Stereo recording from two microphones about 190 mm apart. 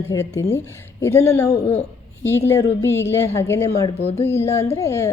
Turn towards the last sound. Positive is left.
turn(degrees=15)  # may be behind; listen again after turning